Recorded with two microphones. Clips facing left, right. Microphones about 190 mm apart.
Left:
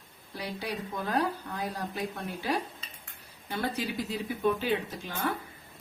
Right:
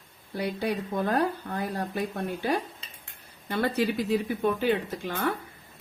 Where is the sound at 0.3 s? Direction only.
55° right (ahead or behind).